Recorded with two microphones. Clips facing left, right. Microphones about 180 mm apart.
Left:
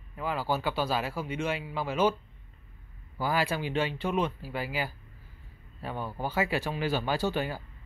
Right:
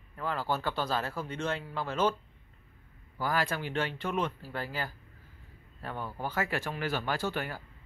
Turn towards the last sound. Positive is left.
turn(degrees=20)  # may be behind; listen again after turning